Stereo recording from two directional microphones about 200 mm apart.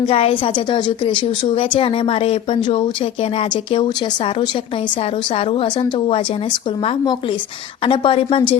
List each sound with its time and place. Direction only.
0.0 s a woman's voice: 30° left (ahead or behind)